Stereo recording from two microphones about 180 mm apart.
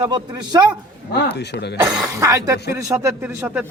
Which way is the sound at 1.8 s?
5° right (ahead or behind).